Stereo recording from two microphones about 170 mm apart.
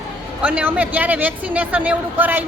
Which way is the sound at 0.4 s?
10° right (ahead or behind).